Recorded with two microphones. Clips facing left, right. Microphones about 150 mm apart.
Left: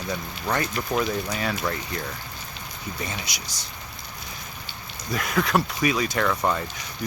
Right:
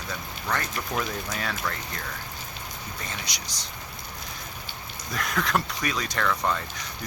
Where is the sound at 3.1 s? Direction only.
5° left (ahead or behind).